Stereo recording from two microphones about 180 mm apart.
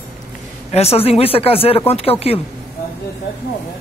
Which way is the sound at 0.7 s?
35° left (ahead or behind).